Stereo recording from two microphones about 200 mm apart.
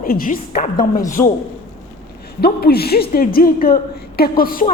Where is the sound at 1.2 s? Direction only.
15° left (ahead or behind).